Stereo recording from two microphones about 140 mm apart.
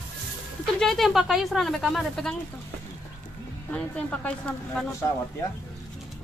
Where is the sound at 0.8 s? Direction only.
Centre (ahead or behind).